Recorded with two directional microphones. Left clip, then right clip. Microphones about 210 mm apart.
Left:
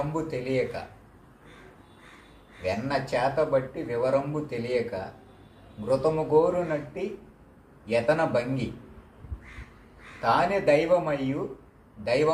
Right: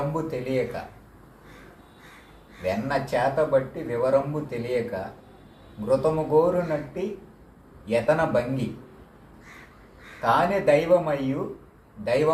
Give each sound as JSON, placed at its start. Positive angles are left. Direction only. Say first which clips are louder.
{"t": 0.1, "sound": "speech", "louder": "right 1 dB", "side_deg": 5}
{"t": 2.6, "sound": "speech", "louder": "right 2 dB", "side_deg": 5}
{"t": 10.2, "sound": "speech", "louder": "right 2 dB", "side_deg": 5}